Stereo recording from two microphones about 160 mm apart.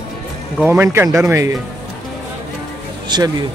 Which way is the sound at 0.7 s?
15° right (ahead or behind).